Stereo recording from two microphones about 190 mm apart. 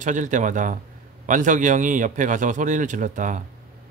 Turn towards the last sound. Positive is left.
turn(degrees=-40)  # may be behind; listen again after turning